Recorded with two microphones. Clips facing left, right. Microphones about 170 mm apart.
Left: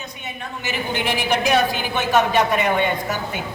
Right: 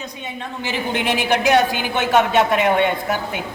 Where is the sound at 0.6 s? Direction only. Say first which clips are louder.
Right 2 dB; 90° right.